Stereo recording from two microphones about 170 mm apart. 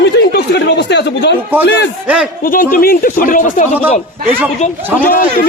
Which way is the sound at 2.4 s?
55° left (ahead or behind).